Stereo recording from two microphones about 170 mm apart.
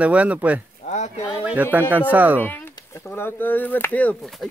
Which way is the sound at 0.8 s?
40° left (ahead or behind).